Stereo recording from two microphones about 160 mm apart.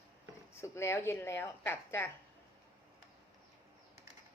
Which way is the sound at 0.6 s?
15° left (ahead or behind).